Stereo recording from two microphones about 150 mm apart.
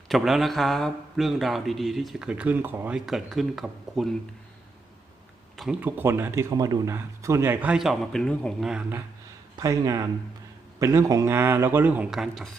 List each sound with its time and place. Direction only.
0.1 s speech: centre (ahead or behind)
5.5 s speech: 5° right (ahead or behind)
6.0 s speech: 15° right (ahead or behind)
9.6 s speech: 25° right (ahead or behind); by 12.5 s centre (ahead or behind)